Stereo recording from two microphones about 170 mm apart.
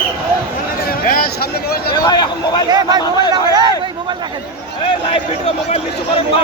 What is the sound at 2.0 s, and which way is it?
Speech, 25° left (ahead or behind).